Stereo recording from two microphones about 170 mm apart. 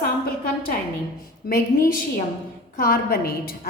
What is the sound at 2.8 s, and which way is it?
Speech, 60° left (ahead or behind).